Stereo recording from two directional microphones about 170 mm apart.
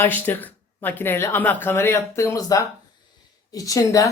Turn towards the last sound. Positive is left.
turn(degrees=20)  # may be behind; listen again after turning